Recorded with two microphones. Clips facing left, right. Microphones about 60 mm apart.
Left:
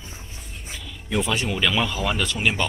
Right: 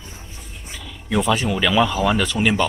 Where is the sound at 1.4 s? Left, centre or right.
Centre.